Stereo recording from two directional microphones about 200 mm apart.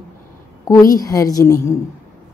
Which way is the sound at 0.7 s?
15° left (ahead or behind).